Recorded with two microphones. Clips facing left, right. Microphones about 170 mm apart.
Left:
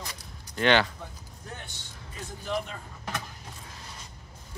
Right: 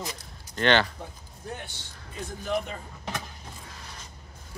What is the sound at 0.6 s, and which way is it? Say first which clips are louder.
Speech: even; 10° left (ahead or behind).